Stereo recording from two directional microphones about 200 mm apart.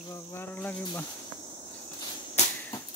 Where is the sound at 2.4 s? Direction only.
35° left (ahead or behind).